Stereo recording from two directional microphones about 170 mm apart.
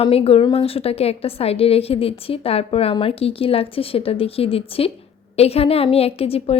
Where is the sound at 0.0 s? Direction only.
35° left (ahead or behind).